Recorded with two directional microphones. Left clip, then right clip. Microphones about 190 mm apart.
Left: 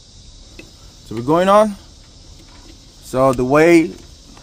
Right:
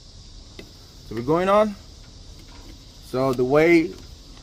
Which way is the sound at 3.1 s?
60° left (ahead or behind).